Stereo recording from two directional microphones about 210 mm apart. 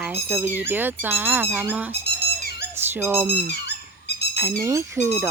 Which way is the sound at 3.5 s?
50° left (ahead or behind).